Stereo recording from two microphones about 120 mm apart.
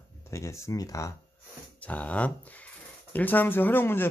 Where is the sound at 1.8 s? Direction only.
10° left (ahead or behind).